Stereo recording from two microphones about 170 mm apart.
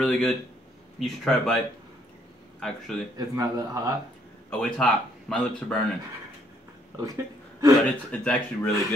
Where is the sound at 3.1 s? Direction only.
20° right (ahead or behind).